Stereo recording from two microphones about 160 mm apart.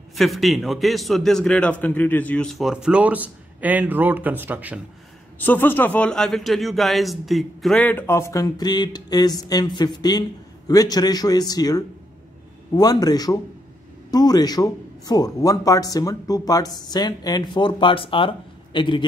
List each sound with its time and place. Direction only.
0.1 s a man's voice: centre (ahead or behind)
5.4 s a man's voice: 10° left (ahead or behind); by 19.0 s 30° left (ahead or behind)